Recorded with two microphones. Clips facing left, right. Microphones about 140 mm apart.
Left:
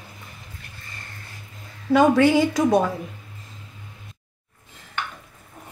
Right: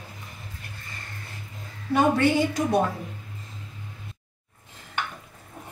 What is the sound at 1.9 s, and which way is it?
Speech, 90° left.